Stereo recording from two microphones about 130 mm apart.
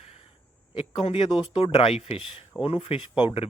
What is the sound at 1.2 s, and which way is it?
Speech, 40° left (ahead or behind).